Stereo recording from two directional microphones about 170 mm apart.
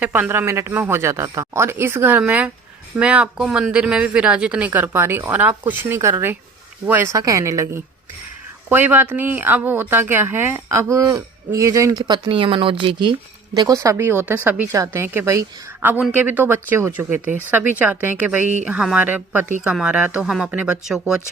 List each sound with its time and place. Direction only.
0.0 s speech: 10° right (ahead or behind)